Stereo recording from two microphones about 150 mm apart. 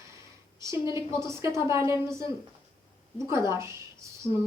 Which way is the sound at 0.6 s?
20° right (ahead or behind).